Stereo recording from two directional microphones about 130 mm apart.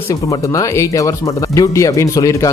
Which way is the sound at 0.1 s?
25° left (ahead or behind).